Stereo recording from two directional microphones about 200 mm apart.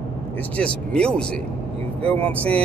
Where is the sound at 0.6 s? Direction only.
5° left (ahead or behind).